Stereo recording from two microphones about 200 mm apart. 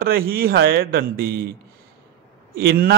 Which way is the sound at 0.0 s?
50° right (ahead or behind).